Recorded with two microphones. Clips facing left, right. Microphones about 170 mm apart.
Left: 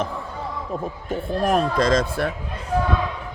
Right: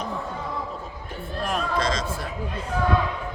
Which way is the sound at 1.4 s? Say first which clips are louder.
Left 6 dB; 50° left (ahead or behind).